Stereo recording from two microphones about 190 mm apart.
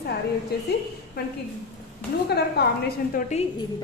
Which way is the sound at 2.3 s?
55° left (ahead or behind).